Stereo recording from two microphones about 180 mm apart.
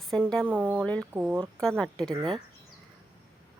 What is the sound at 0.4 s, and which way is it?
Speech, 10° right (ahead or behind).